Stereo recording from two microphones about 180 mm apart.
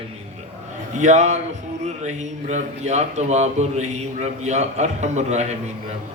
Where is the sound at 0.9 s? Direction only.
40° right (ahead or behind).